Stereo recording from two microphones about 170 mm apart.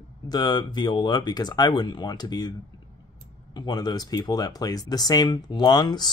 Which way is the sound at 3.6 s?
25° left (ahead or behind).